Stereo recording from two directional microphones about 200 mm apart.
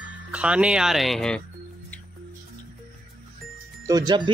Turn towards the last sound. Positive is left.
turn(degrees=-20)  # may be behind; listen again after turning